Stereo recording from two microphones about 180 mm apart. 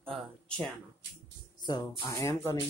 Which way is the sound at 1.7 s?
20° left (ahead or behind).